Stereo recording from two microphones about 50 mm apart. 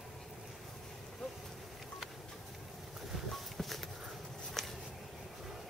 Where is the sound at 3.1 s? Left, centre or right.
Centre.